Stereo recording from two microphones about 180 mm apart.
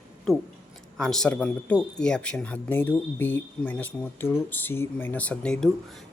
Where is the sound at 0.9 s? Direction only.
Centre (ahead or behind).